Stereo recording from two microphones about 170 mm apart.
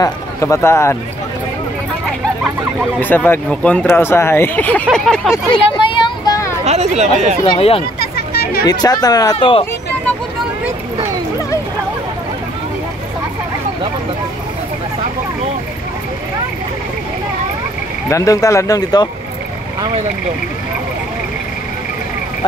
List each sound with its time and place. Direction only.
0.0 s speech: 15° left (ahead or behind)
3.0 s speech: 10° left (ahead or behind)
4.9 s a sound: 5° left (ahead or behind)
6.0 s a sound: 20° left (ahead or behind)
6.6 s speech: 40° right (ahead or behind)
7.4 s speech: 35° left (ahead or behind)
8.0 s hubbub: 65° left (ahead or behind)
8.6 s speech: 25° left (ahead or behind)
18.1 s speech: 20° left (ahead or behind)